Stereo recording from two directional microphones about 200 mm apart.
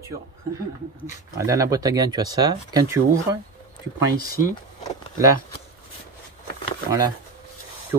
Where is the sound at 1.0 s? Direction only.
15° right (ahead or behind).